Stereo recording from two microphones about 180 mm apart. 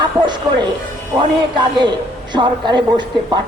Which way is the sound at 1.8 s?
25° right (ahead or behind).